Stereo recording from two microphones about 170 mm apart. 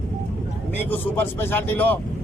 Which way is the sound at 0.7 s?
10° left (ahead or behind).